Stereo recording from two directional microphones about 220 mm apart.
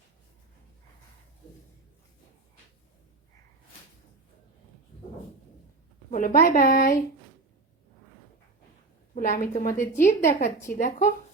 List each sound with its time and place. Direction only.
6.1 s speech: 35° left (ahead or behind)
9.1 s speech: 35° left (ahead or behind)